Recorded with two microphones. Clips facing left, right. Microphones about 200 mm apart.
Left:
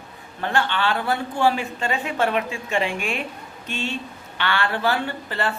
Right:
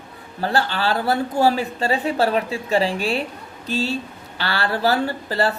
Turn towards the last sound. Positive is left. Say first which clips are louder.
# right 5 dB
turn(degrees=-35)  # may be behind; listen again after turning